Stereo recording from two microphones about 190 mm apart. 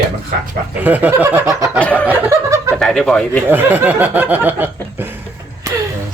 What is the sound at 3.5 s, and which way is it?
Speech, 10° right (ahead or behind).